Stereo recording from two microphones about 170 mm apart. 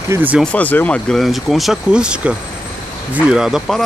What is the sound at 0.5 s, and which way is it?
Speech, 10° left (ahead or behind).